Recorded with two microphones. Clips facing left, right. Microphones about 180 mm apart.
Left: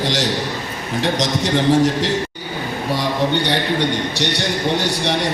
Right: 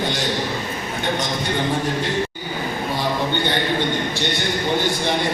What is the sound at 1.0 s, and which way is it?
Speech, 85° left.